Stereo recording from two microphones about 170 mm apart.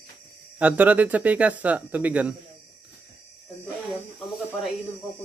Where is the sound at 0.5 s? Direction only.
10° right (ahead or behind).